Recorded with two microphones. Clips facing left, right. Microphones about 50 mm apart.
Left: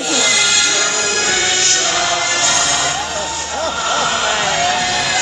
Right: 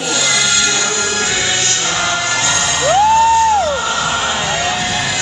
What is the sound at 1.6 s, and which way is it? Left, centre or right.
Music, right.